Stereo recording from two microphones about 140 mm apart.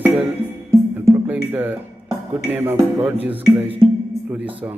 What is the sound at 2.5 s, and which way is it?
Music, 15° right (ahead or behind).